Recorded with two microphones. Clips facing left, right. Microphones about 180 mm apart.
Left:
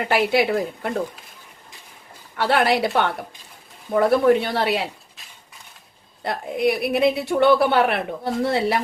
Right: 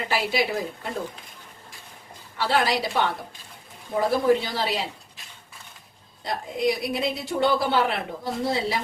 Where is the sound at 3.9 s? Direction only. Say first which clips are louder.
Left 5 dB; 65° left (ahead or behind).